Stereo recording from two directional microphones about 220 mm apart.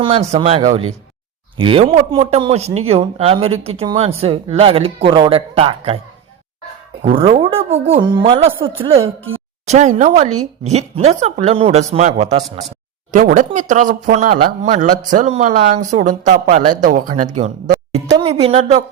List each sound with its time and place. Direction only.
0.0 s speech: 25° right (ahead or behind)
7.2 s speech: 25° right (ahead or behind)
17.7 s speech: 25° right (ahead or behind)